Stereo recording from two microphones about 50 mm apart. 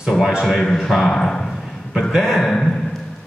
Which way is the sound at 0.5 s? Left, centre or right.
Centre.